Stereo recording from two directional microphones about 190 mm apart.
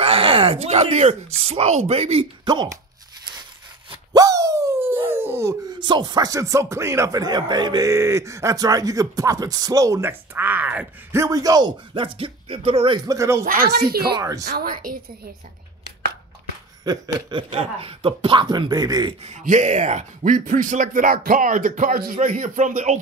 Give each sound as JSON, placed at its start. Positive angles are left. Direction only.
{"t": 0.0, "sound": "speech", "side_deg": -30}
{"t": 4.1, "sound": "speech", "side_deg": -20}
{"t": 13.5, "sound": "speech", "side_deg": -50}
{"t": 14.1, "sound": "speech", "side_deg": -15}
{"t": 14.4, "sound": "speech", "side_deg": -50}
{"t": 16.8, "sound": "speech", "side_deg": -20}
{"t": 19.2, "sound": "speech", "side_deg": -40}